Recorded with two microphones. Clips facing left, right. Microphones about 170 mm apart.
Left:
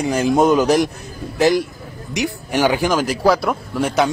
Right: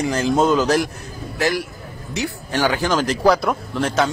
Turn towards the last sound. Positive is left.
turn(degrees=10)  # may be behind; listen again after turning